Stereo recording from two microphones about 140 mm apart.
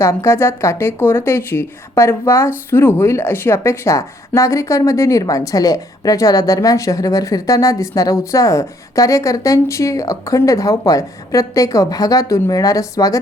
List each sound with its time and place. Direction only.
0.0 s a woman's voice: 20° left (ahead or behind)